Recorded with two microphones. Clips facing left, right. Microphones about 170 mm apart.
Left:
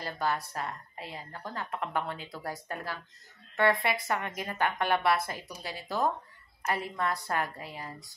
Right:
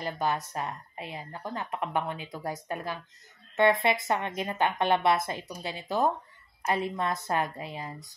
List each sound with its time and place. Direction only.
0.0 s a woman's voice: 20° right (ahead or behind)